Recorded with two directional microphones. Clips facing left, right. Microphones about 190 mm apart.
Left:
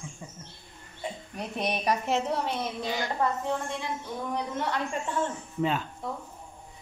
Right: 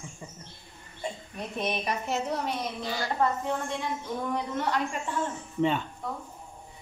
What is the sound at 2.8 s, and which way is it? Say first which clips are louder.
Speech: left 1 dB; 20° left (ahead or behind).